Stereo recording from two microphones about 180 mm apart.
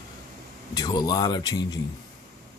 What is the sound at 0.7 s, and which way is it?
Speech, 20° left (ahead or behind).